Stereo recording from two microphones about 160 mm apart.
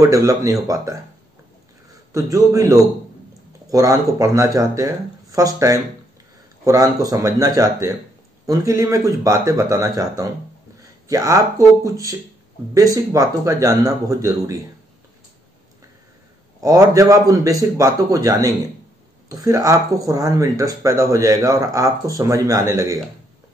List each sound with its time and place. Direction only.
0.0 s speech: 20° right (ahead or behind)
2.1 s speech: 20° right (ahead or behind)
16.6 s speech: 20° right (ahead or behind)